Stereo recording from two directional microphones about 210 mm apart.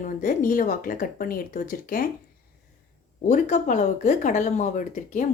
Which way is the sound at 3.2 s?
35° left (ahead or behind).